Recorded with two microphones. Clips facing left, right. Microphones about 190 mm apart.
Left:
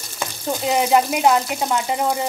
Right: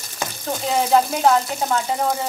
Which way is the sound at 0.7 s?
15° left (ahead or behind).